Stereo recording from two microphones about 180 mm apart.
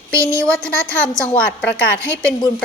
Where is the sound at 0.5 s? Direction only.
5° left (ahead or behind).